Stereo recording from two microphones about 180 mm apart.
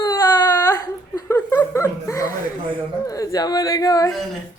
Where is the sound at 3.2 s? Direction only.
20° left (ahead or behind).